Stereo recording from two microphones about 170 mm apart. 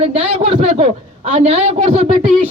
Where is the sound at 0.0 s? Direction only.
35° right (ahead or behind).